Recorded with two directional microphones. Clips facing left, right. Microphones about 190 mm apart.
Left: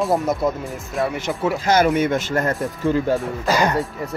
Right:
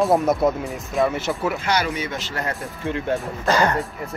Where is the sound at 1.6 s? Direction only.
50° left (ahead or behind).